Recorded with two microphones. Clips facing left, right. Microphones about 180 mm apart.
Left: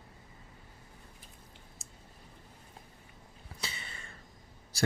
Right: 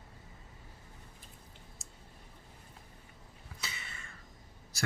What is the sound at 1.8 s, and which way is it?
Clicking, centre (ahead or behind).